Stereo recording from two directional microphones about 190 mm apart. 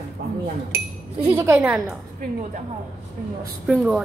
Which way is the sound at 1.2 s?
15° right (ahead or behind).